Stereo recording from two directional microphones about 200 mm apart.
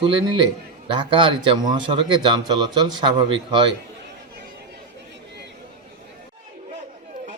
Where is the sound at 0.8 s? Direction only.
25° right (ahead or behind).